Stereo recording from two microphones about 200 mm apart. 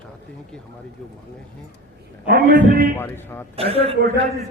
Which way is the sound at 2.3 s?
45° right (ahead or behind).